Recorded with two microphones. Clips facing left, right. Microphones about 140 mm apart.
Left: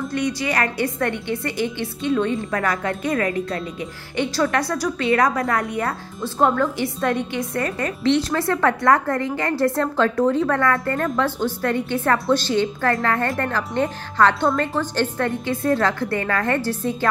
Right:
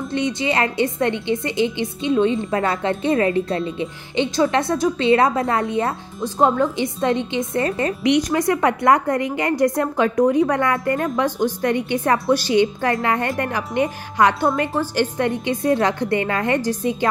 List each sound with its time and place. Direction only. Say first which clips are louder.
0.1 s a woman's voice: right 3 dB; 25° right (ahead or behind)
8.0 s a woman's voice: right 1 dB; 15° right (ahead or behind)